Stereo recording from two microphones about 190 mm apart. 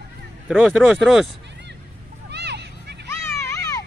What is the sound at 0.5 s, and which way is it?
Speech, centre (ahead or behind).